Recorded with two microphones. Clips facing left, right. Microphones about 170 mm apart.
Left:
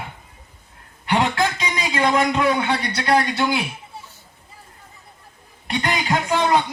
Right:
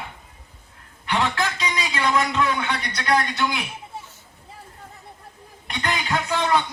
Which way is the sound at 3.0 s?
30° left (ahead or behind).